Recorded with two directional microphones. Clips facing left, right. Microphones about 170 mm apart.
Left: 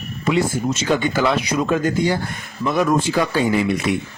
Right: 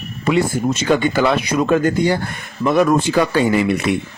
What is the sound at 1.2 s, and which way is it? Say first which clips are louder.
Speech: right 3 dB; 60° right (ahead or behind).